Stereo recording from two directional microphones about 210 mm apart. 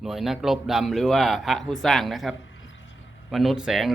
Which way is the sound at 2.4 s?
65° left (ahead or behind).